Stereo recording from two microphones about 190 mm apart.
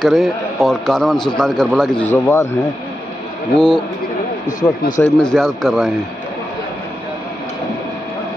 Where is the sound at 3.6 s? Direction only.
5° left (ahead or behind).